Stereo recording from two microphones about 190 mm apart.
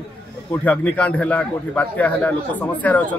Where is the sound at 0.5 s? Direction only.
10° left (ahead or behind).